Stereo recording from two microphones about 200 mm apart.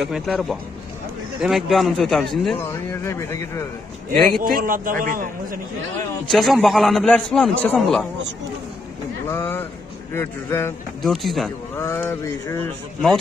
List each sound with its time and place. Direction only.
0.0 s a man's voice: centre (ahead or behind)
2.6 s speech: 10° left (ahead or behind)
4.4 s a man's voice: 45° right (ahead or behind)
6.2 s a man's voice: centre (ahead or behind)
9.3 s speech: 10° left (ahead or behind)
11.0 s a man's voice: centre (ahead or behind)
11.7 s speech: 10° left (ahead or behind)